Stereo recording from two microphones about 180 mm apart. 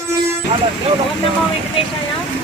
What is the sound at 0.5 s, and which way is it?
Speech, 35° right (ahead or behind).